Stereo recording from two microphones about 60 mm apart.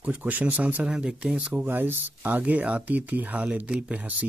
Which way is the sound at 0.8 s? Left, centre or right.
Centre.